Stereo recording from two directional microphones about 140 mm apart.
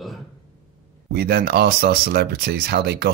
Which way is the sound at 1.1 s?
90° right.